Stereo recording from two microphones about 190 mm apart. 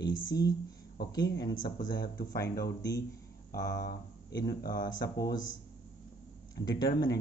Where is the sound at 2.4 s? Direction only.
60° left (ahead or behind).